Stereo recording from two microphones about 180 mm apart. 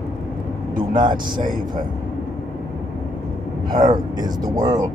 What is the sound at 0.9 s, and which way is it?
Speech, 25° right (ahead or behind).